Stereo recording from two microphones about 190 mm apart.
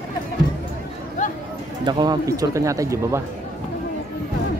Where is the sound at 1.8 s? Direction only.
20° right (ahead or behind).